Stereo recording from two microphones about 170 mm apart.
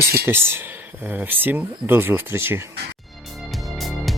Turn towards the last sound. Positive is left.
turn(degrees=0)  # may be behind; listen again after turning